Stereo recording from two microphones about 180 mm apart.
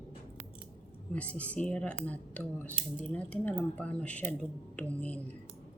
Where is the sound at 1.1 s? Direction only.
5° left (ahead or behind).